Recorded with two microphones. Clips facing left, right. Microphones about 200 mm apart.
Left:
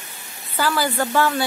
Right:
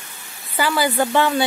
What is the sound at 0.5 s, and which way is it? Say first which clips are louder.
Speech: right 2 dB; 15° right (ahead or behind).